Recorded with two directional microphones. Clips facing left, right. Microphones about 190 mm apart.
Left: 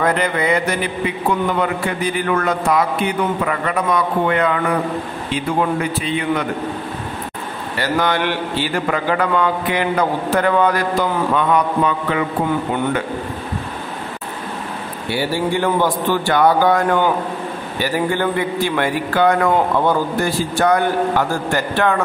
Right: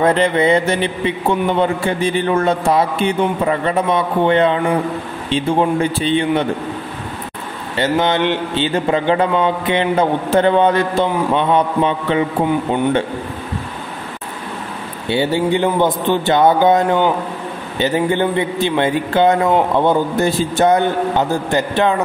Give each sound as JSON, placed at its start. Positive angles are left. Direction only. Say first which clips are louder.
{"t": 0.0, "sound": "a man's voice", "louder": "right 4 dB", "side_deg": -25}
{"t": 7.7, "sound": "a man's voice", "louder": "right 3 dB", "side_deg": -25}
{"t": 15.0, "sound": "a man's voice", "louder": "right 4 dB", "side_deg": -20}